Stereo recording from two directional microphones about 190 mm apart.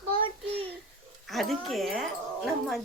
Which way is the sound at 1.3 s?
Centre (ahead or behind).